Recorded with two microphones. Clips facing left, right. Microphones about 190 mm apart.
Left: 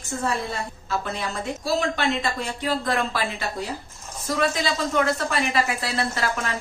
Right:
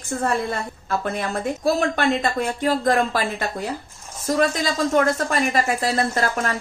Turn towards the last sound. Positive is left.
turn(degrees=-45)  # may be behind; listen again after turning